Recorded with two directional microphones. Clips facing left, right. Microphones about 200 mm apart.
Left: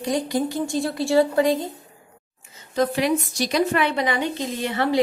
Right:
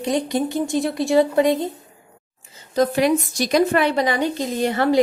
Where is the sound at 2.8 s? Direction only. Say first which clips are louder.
Right 3 dB; 45° right (ahead or behind).